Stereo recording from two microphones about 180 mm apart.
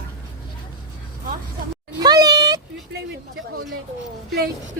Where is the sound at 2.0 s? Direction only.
20° right (ahead or behind).